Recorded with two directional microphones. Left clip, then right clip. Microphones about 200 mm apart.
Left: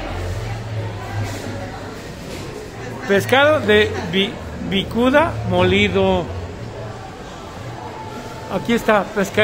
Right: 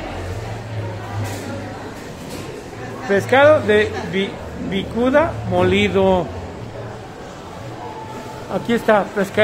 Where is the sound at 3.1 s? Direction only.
10° left (ahead or behind); by 6.2 s 5° right (ahead or behind).